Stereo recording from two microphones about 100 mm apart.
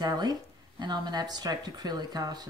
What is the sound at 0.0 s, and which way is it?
Speech, 40° right (ahead or behind).